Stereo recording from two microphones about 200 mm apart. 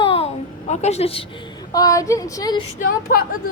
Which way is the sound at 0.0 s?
30° left (ahead or behind).